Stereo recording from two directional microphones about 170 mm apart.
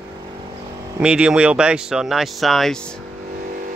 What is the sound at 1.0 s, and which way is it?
Speech, 5° right (ahead or behind).